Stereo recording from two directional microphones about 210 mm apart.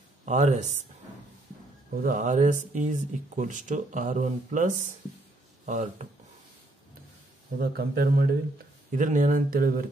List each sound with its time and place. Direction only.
0.2 s speech: 35° right (ahead or behind)
2.0 s speech: 35° right (ahead or behind)
7.5 s speech: 45° right (ahead or behind)